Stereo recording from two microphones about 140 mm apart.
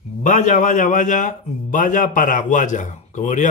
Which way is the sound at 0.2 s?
60° left (ahead or behind).